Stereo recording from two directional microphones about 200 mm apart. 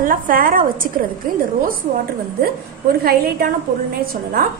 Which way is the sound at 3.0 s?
50° right (ahead or behind).